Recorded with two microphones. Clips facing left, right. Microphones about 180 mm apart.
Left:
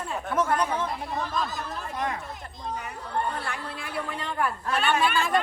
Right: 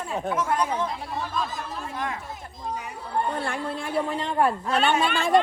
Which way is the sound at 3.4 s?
25° right (ahead or behind).